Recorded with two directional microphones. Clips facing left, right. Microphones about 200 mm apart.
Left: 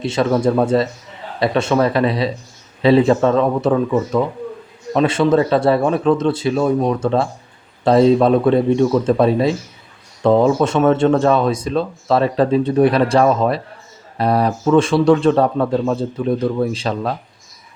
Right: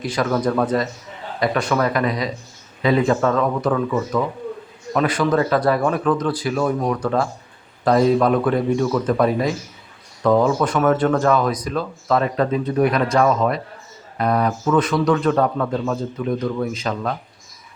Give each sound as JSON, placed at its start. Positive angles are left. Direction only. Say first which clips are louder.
{"t": 0.0, "sound": "a man's voice", "louder": "left 4 dB", "side_deg": 25}